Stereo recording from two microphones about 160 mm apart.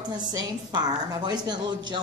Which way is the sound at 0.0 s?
25° right (ahead or behind).